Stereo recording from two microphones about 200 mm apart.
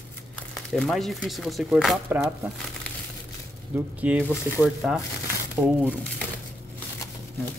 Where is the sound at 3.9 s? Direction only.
5° right (ahead or behind).